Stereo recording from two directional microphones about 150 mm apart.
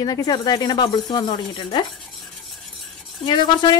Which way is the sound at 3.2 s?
30° left (ahead or behind).